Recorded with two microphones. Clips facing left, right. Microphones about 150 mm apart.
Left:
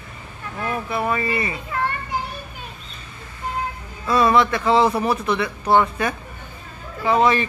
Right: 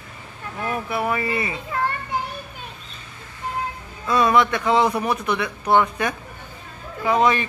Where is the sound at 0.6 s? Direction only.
15° right (ahead or behind).